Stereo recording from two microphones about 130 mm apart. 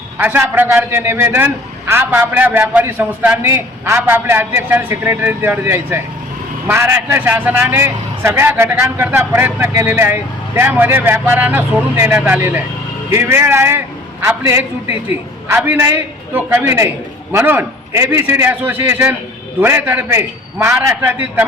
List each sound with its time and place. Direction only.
0.2 s a man's voice: 15° right (ahead or behind)